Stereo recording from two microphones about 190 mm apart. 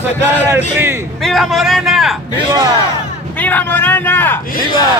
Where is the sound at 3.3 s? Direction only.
10° left (ahead or behind).